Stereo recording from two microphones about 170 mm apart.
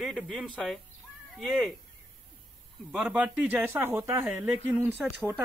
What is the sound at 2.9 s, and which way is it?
A man's voice, 5° right (ahead or behind).